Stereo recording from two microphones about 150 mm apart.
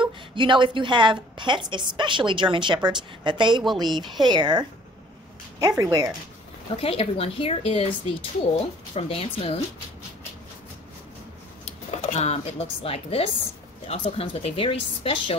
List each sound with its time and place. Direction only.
0.0 s a woman's voice: 35° right (ahead or behind)
6.8 s speech: 40° left (ahead or behind)
8.9 s speech: 40° left (ahead or behind)
11.6 s speech: 45° left (ahead or behind)